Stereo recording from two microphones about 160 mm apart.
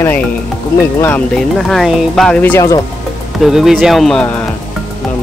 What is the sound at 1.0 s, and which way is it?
Speech, 5° left (ahead or behind).